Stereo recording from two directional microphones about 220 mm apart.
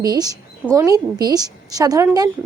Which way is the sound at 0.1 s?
15° right (ahead or behind).